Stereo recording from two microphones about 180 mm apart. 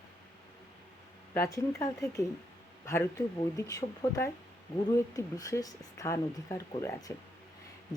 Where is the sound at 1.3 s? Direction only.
15° left (ahead or behind).